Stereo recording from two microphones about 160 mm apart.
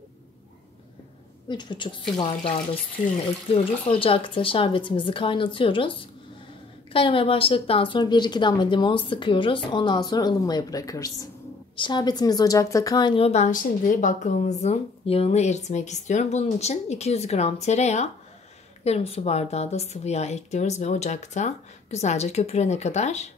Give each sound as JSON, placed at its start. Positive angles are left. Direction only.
{"t": 1.5, "sound": "a woman's voice", "side_deg": 30}
{"t": 4.0, "sound": "a woman's voice", "side_deg": 35}